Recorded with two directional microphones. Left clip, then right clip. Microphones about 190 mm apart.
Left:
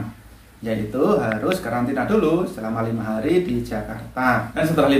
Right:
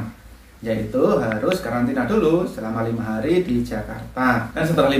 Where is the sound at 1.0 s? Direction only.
Centre (ahead or behind).